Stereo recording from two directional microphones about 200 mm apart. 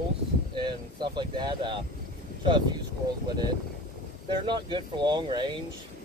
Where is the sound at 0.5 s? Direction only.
25° right (ahead or behind).